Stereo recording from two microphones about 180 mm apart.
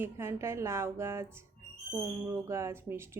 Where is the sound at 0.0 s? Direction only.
15° right (ahead or behind).